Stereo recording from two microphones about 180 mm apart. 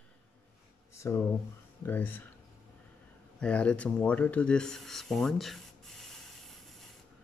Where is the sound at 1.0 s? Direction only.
15° left (ahead or behind).